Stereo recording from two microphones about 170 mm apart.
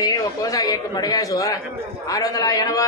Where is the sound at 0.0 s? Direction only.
20° left (ahead or behind).